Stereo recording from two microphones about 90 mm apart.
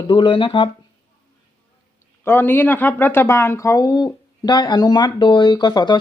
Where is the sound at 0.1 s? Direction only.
70° left (ahead or behind).